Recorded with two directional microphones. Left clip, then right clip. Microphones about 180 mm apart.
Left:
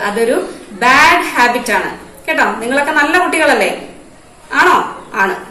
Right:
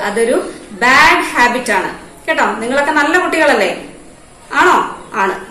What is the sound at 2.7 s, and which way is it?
Speech, 15° right (ahead or behind).